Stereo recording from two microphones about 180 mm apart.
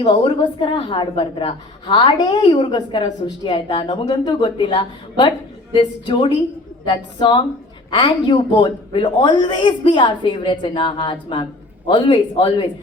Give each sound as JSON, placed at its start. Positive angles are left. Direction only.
{"t": 0.0, "sound": "a woman's voice", "side_deg": 25}